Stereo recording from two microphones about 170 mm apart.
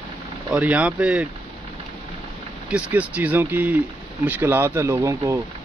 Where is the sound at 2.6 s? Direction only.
10° right (ahead or behind).